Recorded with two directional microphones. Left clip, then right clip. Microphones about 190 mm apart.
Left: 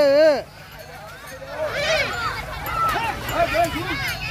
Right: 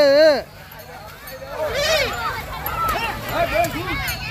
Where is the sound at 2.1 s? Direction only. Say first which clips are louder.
Right 1 dB; 65° left (ahead or behind).